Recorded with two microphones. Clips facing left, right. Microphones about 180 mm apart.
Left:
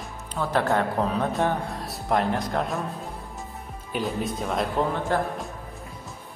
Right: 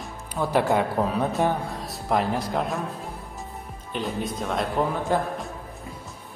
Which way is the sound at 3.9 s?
Centre (ahead or behind).